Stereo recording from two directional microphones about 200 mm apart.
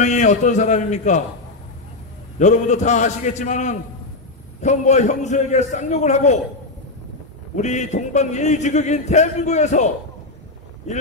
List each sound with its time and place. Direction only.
0.0 s a man's voice: 35° left (ahead or behind)
2.3 s a man's voice: 35° left (ahead or behind)
7.5 s a man's voice: 35° left (ahead or behind)